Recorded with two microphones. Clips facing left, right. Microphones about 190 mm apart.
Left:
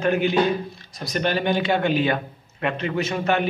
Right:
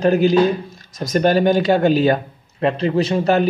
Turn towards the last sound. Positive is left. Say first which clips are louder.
# right 6 dB
turn(degrees=-35)  # may be behind; listen again after turning